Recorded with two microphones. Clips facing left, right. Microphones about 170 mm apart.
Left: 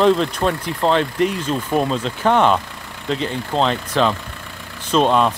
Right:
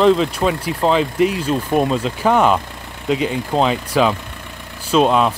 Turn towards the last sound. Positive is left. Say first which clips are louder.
# right 1 dB
turn(degrees=-5)  # may be behind; listen again after turning